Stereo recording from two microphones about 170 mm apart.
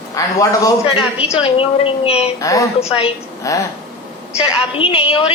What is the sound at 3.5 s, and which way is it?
Speech, 20° left (ahead or behind).